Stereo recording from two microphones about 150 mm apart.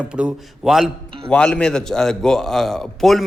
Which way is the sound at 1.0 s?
35° right (ahead or behind).